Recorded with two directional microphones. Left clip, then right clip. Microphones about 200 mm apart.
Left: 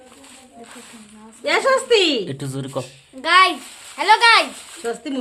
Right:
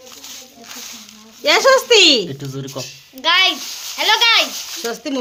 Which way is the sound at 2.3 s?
20° left (ahead or behind).